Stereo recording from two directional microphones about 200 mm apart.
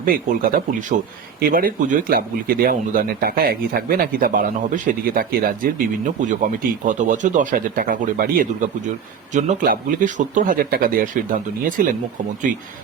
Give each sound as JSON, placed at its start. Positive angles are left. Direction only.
{"t": 0.0, "sound": "speech", "side_deg": -45}